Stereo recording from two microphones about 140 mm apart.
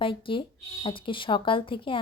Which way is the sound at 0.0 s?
40° left (ahead or behind).